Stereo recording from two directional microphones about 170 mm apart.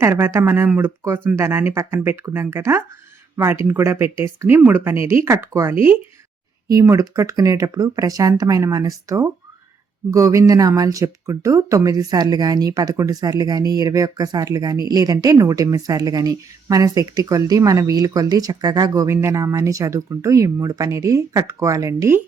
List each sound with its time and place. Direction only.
0.0 s speech: 15° right (ahead or behind)